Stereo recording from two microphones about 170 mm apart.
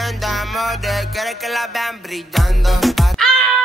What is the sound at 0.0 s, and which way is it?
Music, centre (ahead or behind).